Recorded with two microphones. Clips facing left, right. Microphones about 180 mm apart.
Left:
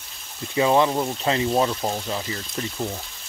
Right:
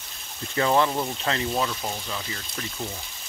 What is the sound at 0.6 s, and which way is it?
Speech, 15° left (ahead or behind).